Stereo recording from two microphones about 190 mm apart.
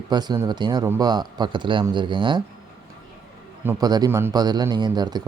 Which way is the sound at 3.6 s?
20° right (ahead or behind).